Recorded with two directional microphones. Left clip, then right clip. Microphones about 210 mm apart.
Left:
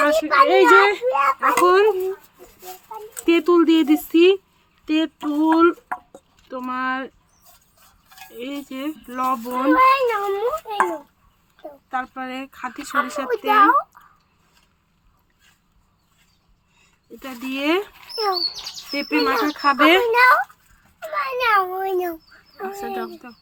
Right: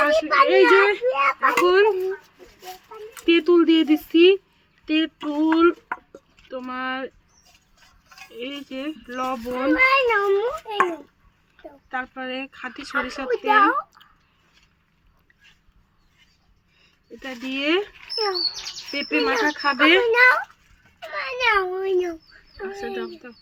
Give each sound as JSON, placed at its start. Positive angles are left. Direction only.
{"t": 0.0, "sound": "a child's voice", "side_deg": 55}
{"t": 3.2, "sound": "a child's voice", "side_deg": 55}
{"t": 6.5, "sound": "a child's voice", "side_deg": 55}
{"t": 8.3, "sound": "a child's voice", "side_deg": 55}
{"t": 11.9, "sound": "a child's voice", "side_deg": 55}
{"t": 17.2, "sound": "a child's voice", "side_deg": 55}
{"t": 21.4, "sound": "a child's voice", "side_deg": 55}